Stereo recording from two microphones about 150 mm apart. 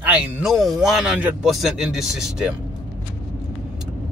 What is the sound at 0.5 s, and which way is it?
A man's voice, centre (ahead or behind).